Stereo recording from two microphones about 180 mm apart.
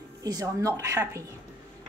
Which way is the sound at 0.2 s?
20° right (ahead or behind).